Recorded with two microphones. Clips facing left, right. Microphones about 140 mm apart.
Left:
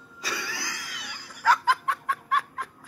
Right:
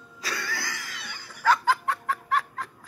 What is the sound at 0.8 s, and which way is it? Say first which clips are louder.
Snicker: even; 10° left (ahead or behind).